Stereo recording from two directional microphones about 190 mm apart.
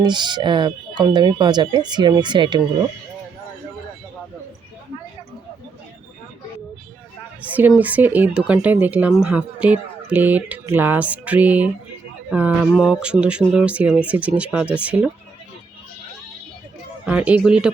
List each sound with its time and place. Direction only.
0.0 s speech: 25° right (ahead or behind)
7.4 s speech: 10° right (ahead or behind)
17.1 s speech: 10° right (ahead or behind)